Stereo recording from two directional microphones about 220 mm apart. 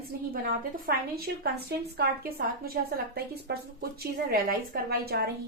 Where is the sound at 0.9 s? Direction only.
45° right (ahead or behind).